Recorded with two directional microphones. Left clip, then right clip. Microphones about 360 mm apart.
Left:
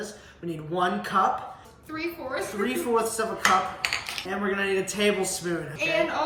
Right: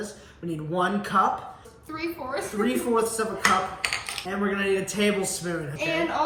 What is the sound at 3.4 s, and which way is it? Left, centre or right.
Cutlery, right.